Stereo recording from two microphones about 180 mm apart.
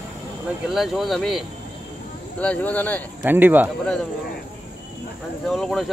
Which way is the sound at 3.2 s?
10° right (ahead or behind).